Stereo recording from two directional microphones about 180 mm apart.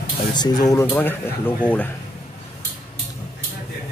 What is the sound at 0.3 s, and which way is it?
Speech, 25° left (ahead or behind).